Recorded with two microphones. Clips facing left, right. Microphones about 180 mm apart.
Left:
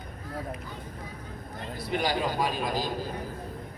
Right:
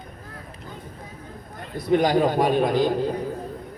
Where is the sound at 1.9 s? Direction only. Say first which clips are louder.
Right 10 dB; 50° right (ahead or behind).